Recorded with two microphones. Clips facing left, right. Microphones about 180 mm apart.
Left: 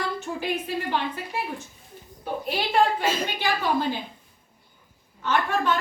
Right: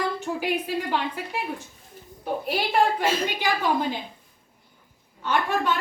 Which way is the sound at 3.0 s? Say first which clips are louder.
Right 1 dB; 10° right (ahead or behind).